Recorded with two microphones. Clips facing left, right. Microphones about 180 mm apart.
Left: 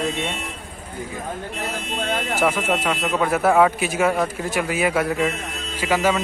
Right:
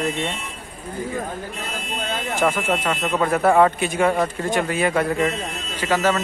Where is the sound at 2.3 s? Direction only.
10° left (ahead or behind).